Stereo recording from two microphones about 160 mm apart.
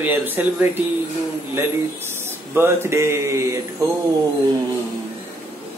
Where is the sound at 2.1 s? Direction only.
15° right (ahead or behind).